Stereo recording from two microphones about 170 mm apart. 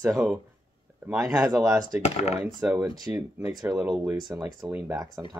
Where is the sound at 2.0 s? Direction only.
40° left (ahead or behind).